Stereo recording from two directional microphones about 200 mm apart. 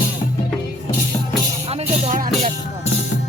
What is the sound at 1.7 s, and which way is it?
Music, 35° right (ahead or behind).